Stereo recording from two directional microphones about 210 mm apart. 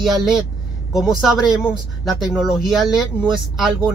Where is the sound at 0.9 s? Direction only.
Centre (ahead or behind).